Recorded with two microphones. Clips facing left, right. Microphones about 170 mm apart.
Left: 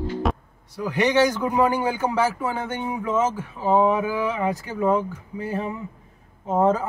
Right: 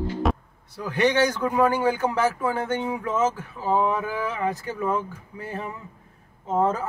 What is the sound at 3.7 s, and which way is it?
Speech, 20° left (ahead or behind).